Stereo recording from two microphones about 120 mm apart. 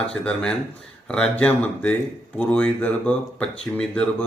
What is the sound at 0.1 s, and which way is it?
Speech, 10° left (ahead or behind).